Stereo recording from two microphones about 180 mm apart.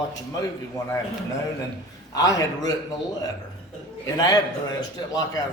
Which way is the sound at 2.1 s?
20° left (ahead or behind).